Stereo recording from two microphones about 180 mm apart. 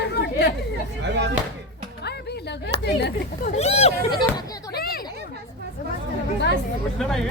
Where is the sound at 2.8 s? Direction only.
65° left (ahead or behind).